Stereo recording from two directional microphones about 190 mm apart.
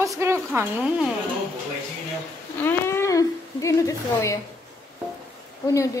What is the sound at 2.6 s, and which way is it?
A woman's voice, 15° left (ahead or behind).